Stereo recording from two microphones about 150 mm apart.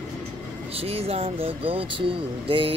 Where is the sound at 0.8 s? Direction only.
40° right (ahead or behind).